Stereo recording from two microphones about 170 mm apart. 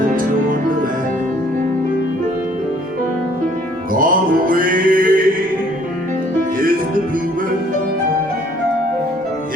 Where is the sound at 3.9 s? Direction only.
55° right (ahead or behind).